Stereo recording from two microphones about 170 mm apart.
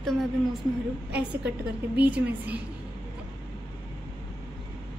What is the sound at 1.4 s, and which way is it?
Speech, 75° right (ahead or behind).